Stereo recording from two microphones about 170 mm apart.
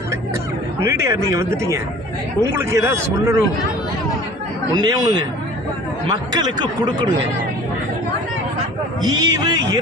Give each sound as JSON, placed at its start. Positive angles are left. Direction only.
{"t": 0.8, "sound": "a man's voice", "side_deg": -15}
{"t": 2.6, "sound": "a man's voice", "side_deg": -15}
{"t": 4.7, "sound": "speech", "side_deg": -25}
{"t": 9.0, "sound": "speech", "side_deg": -25}